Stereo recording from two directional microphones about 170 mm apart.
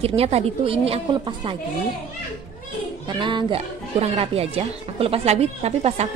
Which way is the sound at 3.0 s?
25° right (ahead or behind).